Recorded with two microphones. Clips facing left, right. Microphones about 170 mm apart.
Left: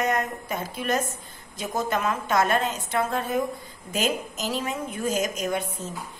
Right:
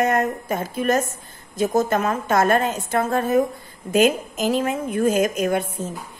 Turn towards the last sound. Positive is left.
turn(degrees=-55)  # may be behind; listen again after turning